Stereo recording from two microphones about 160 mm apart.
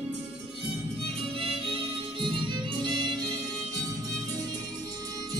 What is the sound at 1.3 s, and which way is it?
Music, 30° right (ahead or behind).